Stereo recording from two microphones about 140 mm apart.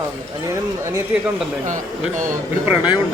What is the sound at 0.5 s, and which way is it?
Speech, 20° right (ahead or behind).